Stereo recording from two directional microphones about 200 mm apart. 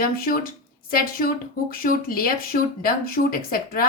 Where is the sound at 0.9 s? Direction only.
45° left (ahead or behind).